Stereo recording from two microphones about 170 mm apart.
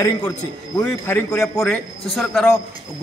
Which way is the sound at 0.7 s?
10° left (ahead or behind).